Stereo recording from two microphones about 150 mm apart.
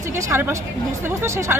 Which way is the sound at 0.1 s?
20° right (ahead or behind).